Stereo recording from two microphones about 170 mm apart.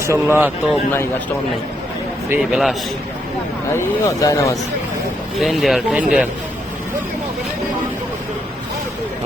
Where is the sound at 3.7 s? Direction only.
20° left (ahead or behind).